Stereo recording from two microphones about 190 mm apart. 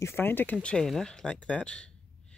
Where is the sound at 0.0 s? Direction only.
10° left (ahead or behind).